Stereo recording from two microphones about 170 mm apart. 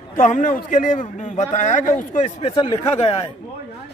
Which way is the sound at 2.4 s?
35° left (ahead or behind).